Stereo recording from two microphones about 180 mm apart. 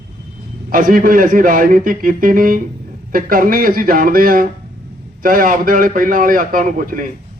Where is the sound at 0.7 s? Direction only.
50° right (ahead or behind).